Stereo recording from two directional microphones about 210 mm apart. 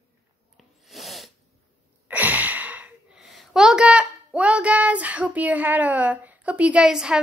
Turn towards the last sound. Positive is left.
turn(degrees=-5)  # may be behind; listen again after turning